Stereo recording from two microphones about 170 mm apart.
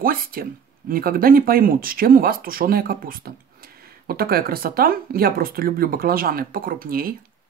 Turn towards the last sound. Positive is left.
turn(degrees=-60)  # may be behind; listen again after turning